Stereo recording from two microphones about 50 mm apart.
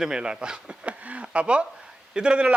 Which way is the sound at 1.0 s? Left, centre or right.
Right.